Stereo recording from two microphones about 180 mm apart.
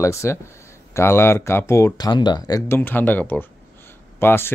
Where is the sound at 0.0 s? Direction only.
15° left (ahead or behind).